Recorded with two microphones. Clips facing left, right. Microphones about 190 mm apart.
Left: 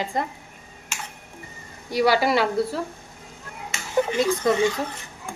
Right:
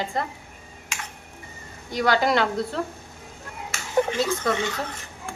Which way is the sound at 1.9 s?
10° left (ahead or behind).